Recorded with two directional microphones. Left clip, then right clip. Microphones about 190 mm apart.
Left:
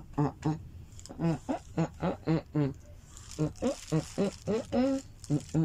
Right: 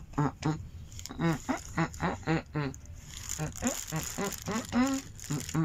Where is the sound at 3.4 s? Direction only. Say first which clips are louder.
Left 4 dB; 30° left (ahead or behind).